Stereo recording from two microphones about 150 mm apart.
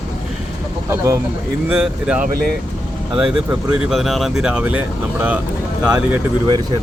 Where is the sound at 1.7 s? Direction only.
10° right (ahead or behind).